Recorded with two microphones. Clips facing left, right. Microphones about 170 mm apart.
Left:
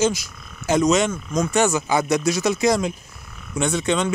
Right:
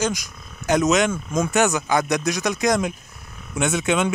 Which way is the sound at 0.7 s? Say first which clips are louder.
Even; centre (ahead or behind).